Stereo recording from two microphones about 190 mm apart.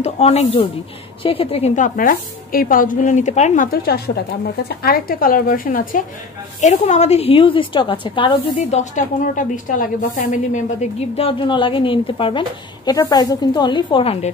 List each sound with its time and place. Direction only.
0.0 s a woman's voice: 35° left (ahead or behind)
2.0 s a woman's voice: 45° left (ahead or behind); by 14.3 s 30° left (ahead or behind)